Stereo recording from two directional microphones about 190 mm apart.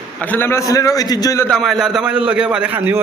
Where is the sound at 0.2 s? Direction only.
10° left (ahead or behind).